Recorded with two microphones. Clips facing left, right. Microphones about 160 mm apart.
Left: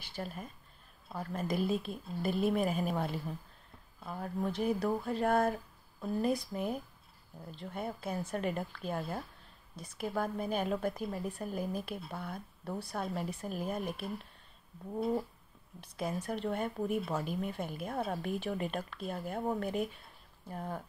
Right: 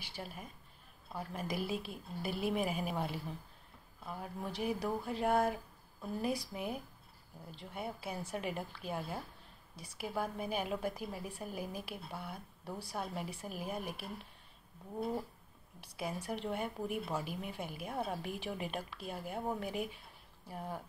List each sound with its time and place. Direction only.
0.0 s a woman's voice: 10° right (ahead or behind)
4.2 s a woman's voice: 10° right (ahead or behind)
15.8 s a woman's voice: 10° right (ahead or behind)